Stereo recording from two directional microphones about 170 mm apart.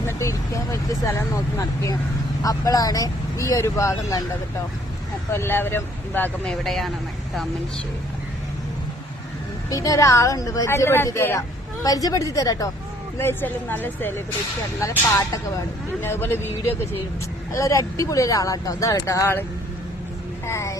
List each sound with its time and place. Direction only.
0.0 s a woman's voice: 15° left (ahead or behind)
5.3 s speech: 15° left (ahead or behind)
6.7 s speech: centre (ahead or behind)
9.6 s a woman's voice: 20° left (ahead or behind)
17.5 s a woman's voice: 15° left (ahead or behind)
20.5 s speech: 15° left (ahead or behind)